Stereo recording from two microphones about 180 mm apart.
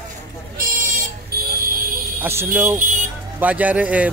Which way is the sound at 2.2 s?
10° right (ahead or behind).